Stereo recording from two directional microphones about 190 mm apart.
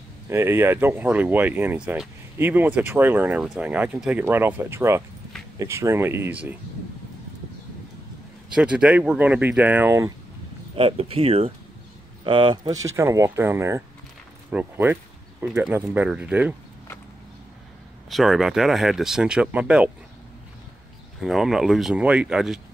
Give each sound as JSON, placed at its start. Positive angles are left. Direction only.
{"t": 0.3, "sound": "speech", "side_deg": -15}
{"t": 8.5, "sound": "speech", "side_deg": -5}
{"t": 10.8, "sound": "speech", "side_deg": -30}
{"t": 12.8, "sound": "speech", "side_deg": -15}
{"t": 18.1, "sound": "speech", "side_deg": 0}
{"t": 21.2, "sound": "speech", "side_deg": 0}